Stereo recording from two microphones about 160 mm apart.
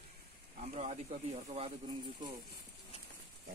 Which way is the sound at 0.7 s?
45° right (ahead or behind).